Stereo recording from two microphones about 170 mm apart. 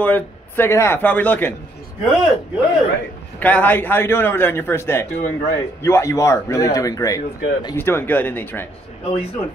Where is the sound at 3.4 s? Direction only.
10° left (ahead or behind).